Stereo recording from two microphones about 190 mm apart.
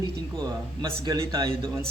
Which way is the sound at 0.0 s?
20° right (ahead or behind).